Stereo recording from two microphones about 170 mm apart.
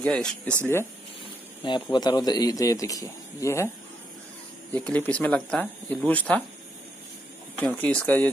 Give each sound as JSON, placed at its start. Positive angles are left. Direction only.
{"t": 0.0, "sound": "speech", "side_deg": 5}
{"t": 1.6, "sound": "a man's voice", "side_deg": 25}
{"t": 4.7, "sound": "speech", "side_deg": 10}
{"t": 7.5, "sound": "speech", "side_deg": 10}